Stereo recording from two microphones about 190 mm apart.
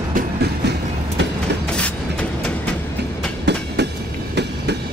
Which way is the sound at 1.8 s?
5° left (ahead or behind).